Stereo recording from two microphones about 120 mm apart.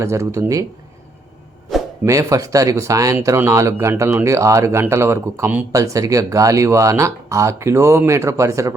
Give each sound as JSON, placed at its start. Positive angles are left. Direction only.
{"t": 0.0, "sound": "speech", "side_deg": -25}
{"t": 2.0, "sound": "speech", "side_deg": -30}